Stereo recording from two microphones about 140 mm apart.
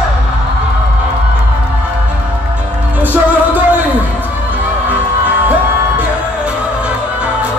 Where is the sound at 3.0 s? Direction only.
15° right (ahead or behind).